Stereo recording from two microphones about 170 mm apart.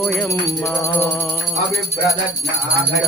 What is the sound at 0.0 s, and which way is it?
Speech, centre (ahead or behind).